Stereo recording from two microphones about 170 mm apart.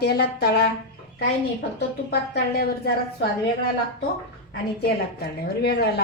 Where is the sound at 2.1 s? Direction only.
70° left (ahead or behind).